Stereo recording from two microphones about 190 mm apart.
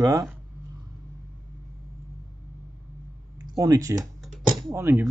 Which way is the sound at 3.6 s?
20° right (ahead or behind).